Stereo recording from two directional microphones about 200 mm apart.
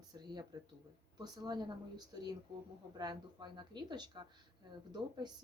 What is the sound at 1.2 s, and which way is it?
Speech, 20° right (ahead or behind).